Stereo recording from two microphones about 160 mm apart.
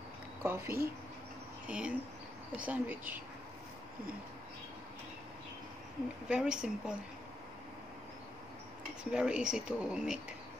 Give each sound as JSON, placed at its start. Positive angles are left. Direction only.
{"t": 0.4, "sound": "speech", "side_deg": -15}
{"t": 6.2, "sound": "speech", "side_deg": -5}
{"t": 9.1, "sound": "speech", "side_deg": -5}